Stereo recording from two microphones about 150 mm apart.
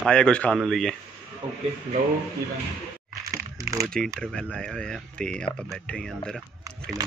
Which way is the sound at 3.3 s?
20° right (ahead or behind).